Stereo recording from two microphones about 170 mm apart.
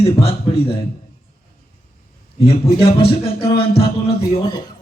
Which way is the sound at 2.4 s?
35° left (ahead or behind).